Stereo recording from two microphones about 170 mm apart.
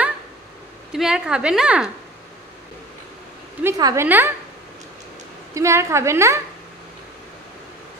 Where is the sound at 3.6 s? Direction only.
20° right (ahead or behind).